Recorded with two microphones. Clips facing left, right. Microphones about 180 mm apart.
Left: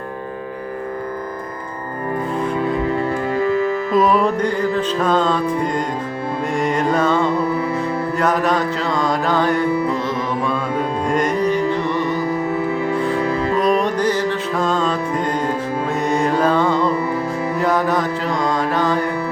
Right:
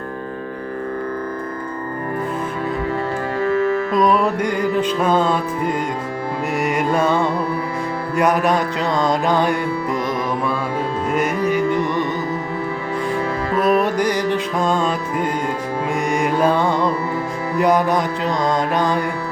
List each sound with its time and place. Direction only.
3.9 s music: centre (ahead or behind)
4.4 s music: 15° right (ahead or behind)
11.1 s music: 5° right (ahead or behind)
13.6 s music: 5° right (ahead or behind)
17.6 s mantra: 15° right (ahead or behind)